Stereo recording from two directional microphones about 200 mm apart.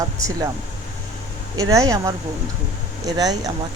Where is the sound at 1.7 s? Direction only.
15° right (ahead or behind).